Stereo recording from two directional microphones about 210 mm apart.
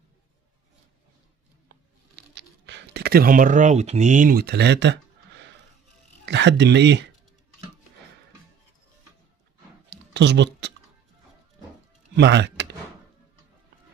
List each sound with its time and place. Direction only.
2.3 s speech: 55° right (ahead or behind)
6.2 s speech: 55° right (ahead or behind)
9.8 s a sound: 55° right (ahead or behind)
12.2 s speech: 55° right (ahead or behind)